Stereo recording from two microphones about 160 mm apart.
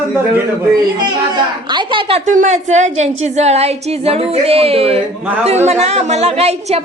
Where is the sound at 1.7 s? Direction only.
30° right (ahead or behind).